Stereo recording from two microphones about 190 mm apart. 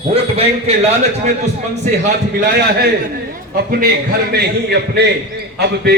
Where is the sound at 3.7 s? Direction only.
50° right (ahead or behind).